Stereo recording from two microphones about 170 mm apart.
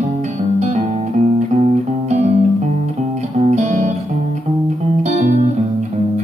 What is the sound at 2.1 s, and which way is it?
Music, 40° right (ahead or behind).